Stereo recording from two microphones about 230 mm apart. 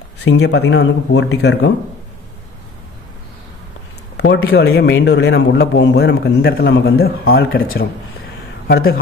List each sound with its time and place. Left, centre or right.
0.2 s a man's voice: left
4.2 s a man's voice: left
8.6 s speech: left